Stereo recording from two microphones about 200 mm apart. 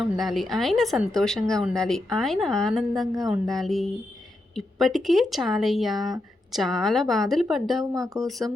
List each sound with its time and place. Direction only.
0.0 s a woman's voice: centre (ahead or behind)
7.9 s speech: 15° right (ahead or behind)